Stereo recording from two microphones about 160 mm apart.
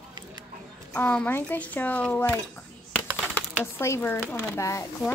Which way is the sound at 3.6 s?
15° left (ahead or behind).